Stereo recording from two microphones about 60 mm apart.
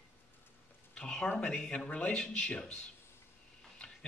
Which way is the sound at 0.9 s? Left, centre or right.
Centre.